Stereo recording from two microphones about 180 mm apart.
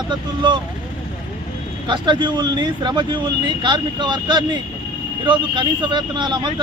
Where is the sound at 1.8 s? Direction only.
25° right (ahead or behind).